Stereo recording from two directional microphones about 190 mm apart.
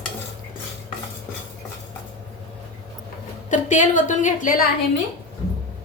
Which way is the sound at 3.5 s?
40° left (ahead or behind).